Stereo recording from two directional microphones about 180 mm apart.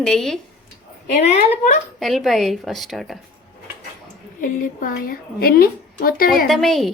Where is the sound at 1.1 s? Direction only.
45° left (ahead or behind).